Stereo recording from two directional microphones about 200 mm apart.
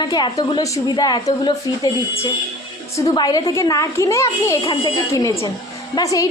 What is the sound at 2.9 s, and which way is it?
A child's voice, 20° left (ahead or behind).